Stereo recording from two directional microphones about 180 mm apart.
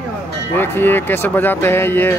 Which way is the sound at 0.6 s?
10° left (ahead or behind).